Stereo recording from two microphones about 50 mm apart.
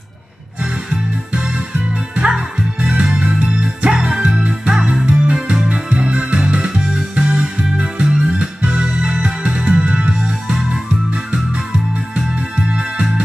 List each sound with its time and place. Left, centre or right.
2.8 s music: right
12.5 s music: right